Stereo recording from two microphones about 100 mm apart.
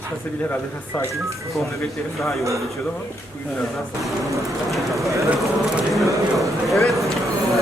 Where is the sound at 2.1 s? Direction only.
Centre (ahead or behind).